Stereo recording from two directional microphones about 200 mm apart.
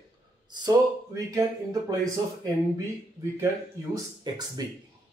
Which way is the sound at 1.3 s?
15° right (ahead or behind).